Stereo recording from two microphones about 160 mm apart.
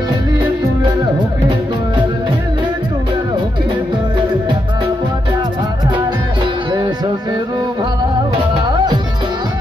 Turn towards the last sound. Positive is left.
turn(degrees=-25)  # may be behind; listen again after turning